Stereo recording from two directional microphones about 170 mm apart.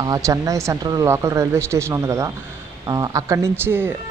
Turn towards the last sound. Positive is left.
turn(degrees=-15)  # may be behind; listen again after turning